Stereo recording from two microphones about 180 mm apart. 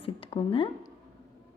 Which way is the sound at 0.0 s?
30° left (ahead or behind).